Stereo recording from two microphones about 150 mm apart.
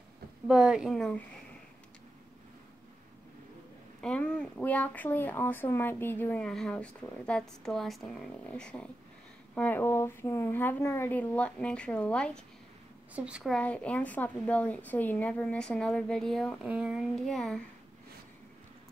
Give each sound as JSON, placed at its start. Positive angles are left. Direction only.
{"t": 0.5, "sound": "a woman's voice", "side_deg": -5}
{"t": 4.0, "sound": "speech", "side_deg": 5}
{"t": 13.1, "sound": "speech", "side_deg": -5}
{"t": 16.6, "sound": "a woman's voice", "side_deg": -5}